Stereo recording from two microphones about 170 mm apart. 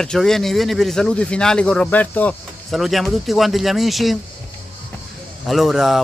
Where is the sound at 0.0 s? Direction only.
5° left (ahead or behind).